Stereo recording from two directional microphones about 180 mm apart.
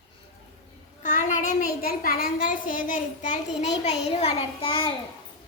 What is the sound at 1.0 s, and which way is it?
A child's voice, 45° left (ahead or behind).